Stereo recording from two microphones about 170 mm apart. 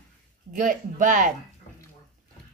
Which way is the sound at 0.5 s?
50° right (ahead or behind).